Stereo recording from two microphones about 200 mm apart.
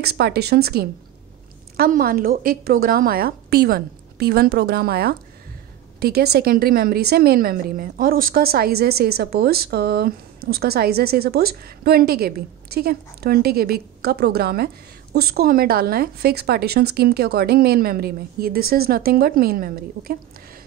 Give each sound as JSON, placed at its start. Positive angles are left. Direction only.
{"t": 0.0, "sound": "a woman's voice", "side_deg": -55}